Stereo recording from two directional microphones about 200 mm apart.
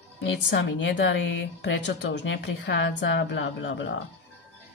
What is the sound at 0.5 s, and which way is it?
A woman's voice, 65° left (ahead or behind).